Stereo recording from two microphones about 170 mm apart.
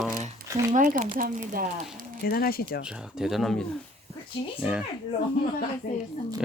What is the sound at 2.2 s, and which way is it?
Speech, 60° left (ahead or behind).